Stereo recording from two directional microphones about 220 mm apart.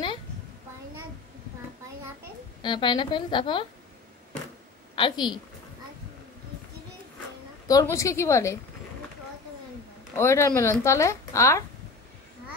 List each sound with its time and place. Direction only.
2.6 s a woman's voice: 20° left (ahead or behind)
4.9 s a woman's voice: 20° left (ahead or behind)
7.6 s speech: 15° left (ahead or behind)
10.1 s speech: 10° left (ahead or behind)